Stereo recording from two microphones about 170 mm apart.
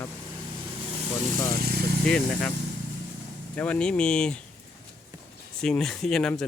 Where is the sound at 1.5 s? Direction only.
65° right (ahead or behind).